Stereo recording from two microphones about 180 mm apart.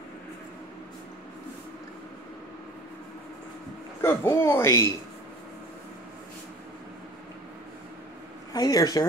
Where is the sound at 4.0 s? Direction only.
15° left (ahead or behind).